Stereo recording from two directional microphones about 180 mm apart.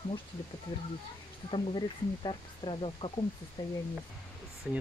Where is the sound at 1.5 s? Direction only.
25° left (ahead or behind).